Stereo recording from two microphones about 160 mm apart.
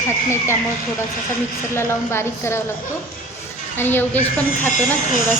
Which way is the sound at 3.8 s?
10° left (ahead or behind).